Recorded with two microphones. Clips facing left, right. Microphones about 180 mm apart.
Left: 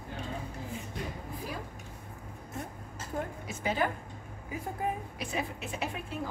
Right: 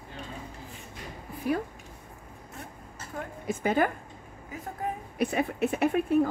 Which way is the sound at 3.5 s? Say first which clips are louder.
Right 7 dB; 50° right (ahead or behind).